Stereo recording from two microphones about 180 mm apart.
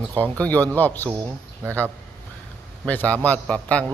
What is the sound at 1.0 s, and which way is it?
Speech, 20° right (ahead or behind).